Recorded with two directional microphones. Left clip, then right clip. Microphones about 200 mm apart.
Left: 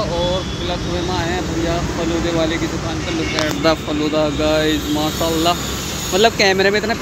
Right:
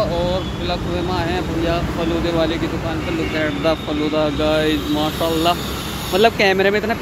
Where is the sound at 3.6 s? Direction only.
5° left (ahead or behind).